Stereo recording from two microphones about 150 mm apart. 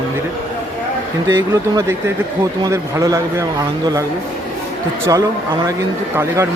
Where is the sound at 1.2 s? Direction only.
25° right (ahead or behind).